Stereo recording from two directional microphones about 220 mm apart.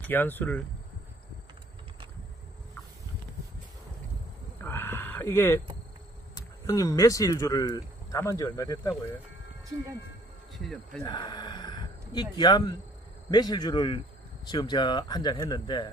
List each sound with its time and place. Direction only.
0.0 s speech: 10° left (ahead or behind)
4.6 s sheep: 10° left (ahead or behind)
6.3 s speech: 15° left (ahead or behind)
10.5 s speech: centre (ahead or behind)
11.1 s speech: 20° left (ahead or behind)